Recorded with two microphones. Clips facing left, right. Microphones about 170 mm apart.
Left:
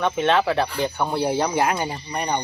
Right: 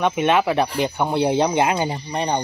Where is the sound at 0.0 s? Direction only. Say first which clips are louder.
Right 2 dB; 15° right (ahead or behind).